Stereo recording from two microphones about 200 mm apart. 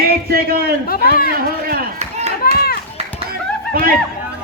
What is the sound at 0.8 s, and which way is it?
Speech, 50° left (ahead or behind).